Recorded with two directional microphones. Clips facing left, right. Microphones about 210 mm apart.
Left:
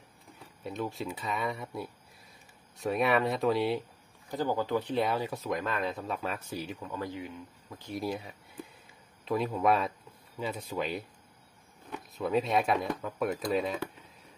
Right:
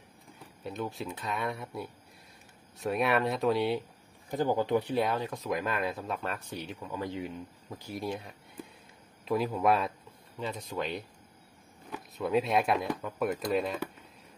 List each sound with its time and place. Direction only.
0.7 s speech: centre (ahead or behind)
4.3 s speech: 15° right (ahead or behind)
4.9 s speech: 5° left (ahead or behind)
5.5 s speech: 10° right (ahead or behind)
6.9 s speech: 20° right (ahead or behind)
7.9 s speech: centre (ahead or behind)